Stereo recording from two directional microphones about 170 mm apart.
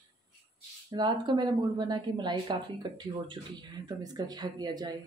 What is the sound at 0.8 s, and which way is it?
Speech, 25° right (ahead or behind).